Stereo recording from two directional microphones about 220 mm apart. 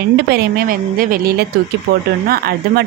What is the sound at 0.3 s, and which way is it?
A woman's voice, 45° right (ahead or behind).